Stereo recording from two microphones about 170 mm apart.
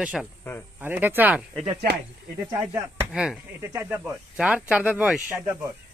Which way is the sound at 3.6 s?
15° right (ahead or behind).